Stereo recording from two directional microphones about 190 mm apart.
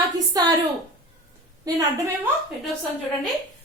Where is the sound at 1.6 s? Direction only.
15° right (ahead or behind).